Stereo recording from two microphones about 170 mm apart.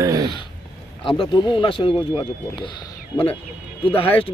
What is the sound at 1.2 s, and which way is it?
Speech, 30° left (ahead or behind).